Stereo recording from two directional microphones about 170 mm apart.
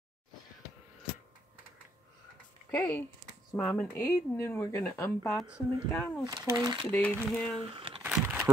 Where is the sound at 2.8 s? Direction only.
10° left (ahead or behind).